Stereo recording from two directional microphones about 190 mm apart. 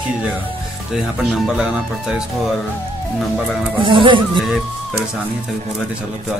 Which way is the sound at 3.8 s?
25° right (ahead or behind).